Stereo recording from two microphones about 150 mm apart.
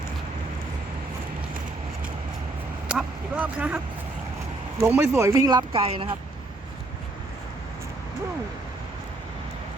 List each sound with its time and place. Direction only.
2.9 s speech: 10° right (ahead or behind)
4.8 s speech: 15° right (ahead or behind)
5.7 s speech: 35° right (ahead or behind)